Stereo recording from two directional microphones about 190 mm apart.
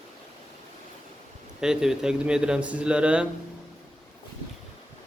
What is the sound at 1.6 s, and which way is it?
Speech, 5° right (ahead or behind).